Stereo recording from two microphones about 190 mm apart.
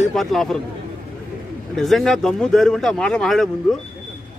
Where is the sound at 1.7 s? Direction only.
Centre (ahead or behind).